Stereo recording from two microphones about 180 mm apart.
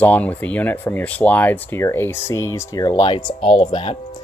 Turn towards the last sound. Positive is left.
turn(degrees=30)  # may be behind; listen again after turning